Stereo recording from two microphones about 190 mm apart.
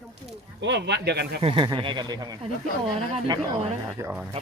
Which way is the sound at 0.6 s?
65° right (ahead or behind).